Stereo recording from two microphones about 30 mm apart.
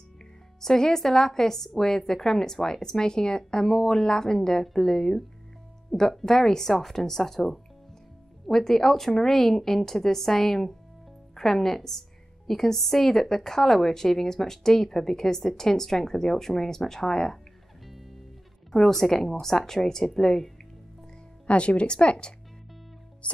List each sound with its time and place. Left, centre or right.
0.6 s a woman's voice: centre
17.8 s music: centre
18.7 s a woman's voice: centre
21.5 s speech: left
23.2 s music: left